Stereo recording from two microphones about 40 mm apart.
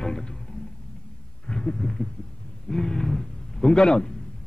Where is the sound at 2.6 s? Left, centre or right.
Centre.